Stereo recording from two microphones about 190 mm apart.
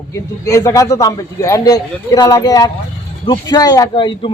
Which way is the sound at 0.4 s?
15° left (ahead or behind).